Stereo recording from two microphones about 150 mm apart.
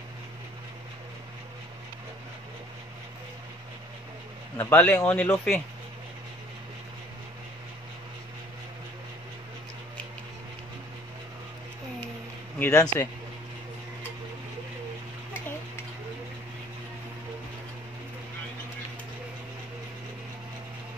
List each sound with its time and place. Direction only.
4.6 s speech: 10° left (ahead or behind)
12.5 s speech: 20° left (ahead or behind)